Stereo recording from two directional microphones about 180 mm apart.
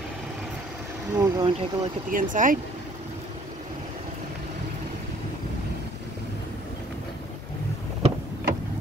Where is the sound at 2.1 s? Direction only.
45° right (ahead or behind).